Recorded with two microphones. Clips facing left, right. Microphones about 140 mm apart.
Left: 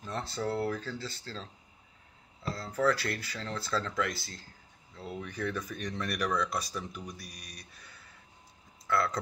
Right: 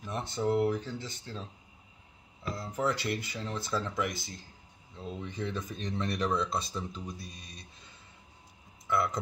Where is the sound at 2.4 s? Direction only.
15° right (ahead or behind).